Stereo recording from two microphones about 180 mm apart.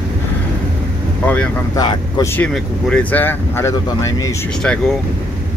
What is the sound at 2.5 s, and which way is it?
Speech, 5° left (ahead or behind).